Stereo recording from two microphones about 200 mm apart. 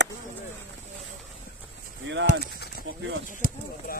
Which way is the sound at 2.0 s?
65° right (ahead or behind).